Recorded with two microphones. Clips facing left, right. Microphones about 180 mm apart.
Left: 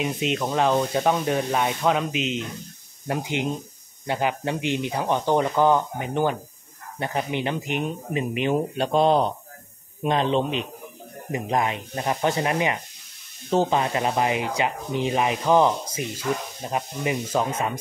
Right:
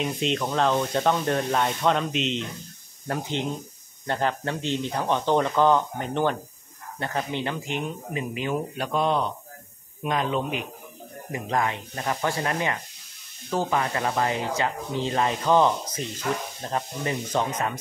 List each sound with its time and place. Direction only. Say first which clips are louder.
0.0 s speech: left 1 dB; 5° left (ahead or behind)